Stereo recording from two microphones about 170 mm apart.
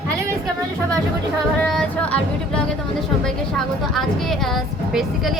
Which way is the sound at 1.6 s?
5° left (ahead or behind).